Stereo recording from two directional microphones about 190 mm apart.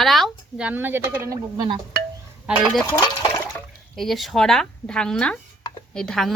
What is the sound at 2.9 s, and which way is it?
Speech, 20° left (ahead or behind).